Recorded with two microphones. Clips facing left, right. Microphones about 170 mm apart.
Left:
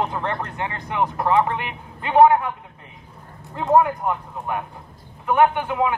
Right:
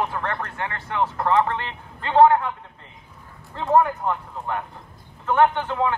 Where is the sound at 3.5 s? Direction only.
15° left (ahead or behind).